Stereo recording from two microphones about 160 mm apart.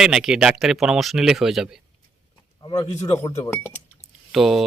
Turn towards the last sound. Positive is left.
turn(degrees=0)  # may be behind; listen again after turning